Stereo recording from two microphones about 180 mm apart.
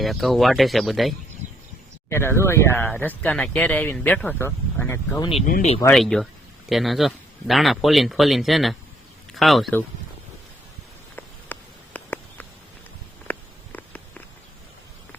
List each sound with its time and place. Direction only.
0.0 s speech: centre (ahead or behind)
2.0 s speech: 15° left (ahead or behind)
5.5 s speech: 50° left (ahead or behind)
5.9 s speech: 5° left (ahead or behind)
11.5 s a sound: 10° left (ahead or behind)